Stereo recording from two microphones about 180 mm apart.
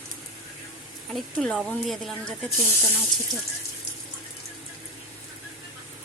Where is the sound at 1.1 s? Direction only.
Centre (ahead or behind).